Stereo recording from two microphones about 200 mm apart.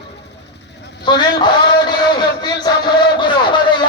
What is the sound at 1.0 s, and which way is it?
A man's voice, 20° left (ahead or behind).